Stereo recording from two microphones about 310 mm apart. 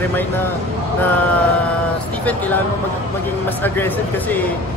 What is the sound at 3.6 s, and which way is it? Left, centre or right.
Speech, centre.